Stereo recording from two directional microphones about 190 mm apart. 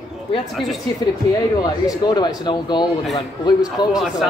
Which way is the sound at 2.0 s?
20° left (ahead or behind).